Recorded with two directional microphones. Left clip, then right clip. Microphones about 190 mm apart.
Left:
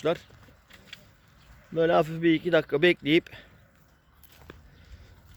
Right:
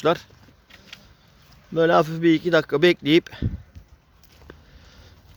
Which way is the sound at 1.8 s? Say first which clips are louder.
Right 5 dB; 35° right (ahead or behind).